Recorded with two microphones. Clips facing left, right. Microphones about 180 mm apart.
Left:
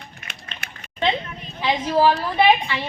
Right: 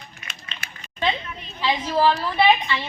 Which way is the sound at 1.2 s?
45° left (ahead or behind).